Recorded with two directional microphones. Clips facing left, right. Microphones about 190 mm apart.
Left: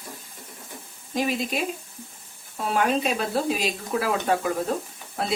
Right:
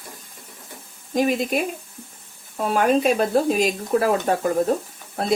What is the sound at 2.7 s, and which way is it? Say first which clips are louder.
Speech: right 5 dB; 45° right (ahead or behind).